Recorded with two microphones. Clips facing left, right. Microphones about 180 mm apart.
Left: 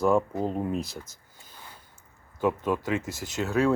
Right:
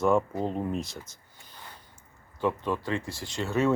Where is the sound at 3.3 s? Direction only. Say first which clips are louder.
Left 1 dB; centre (ahead or behind).